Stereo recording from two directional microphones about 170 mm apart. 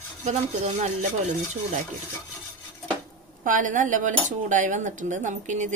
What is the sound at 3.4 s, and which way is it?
Speech, 50° right (ahead or behind).